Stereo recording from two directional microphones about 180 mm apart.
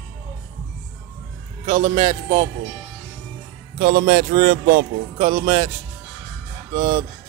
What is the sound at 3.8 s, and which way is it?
Speech, 55° right (ahead or behind).